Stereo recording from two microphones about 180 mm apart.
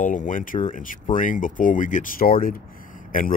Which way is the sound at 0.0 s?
45° left (ahead or behind).